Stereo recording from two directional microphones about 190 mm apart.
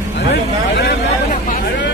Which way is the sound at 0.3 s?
60° left (ahead or behind).